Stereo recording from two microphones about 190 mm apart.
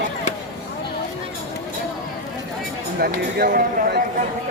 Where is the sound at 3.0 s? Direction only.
55° right (ahead or behind).